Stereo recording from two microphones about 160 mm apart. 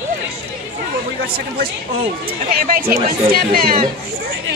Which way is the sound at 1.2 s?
70° right (ahead or behind).